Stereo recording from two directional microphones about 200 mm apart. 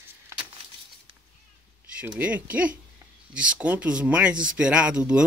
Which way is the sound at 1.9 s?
5° right (ahead or behind).